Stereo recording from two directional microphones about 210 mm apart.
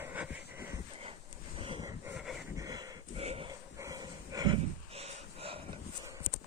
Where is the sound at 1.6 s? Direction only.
25° right (ahead or behind).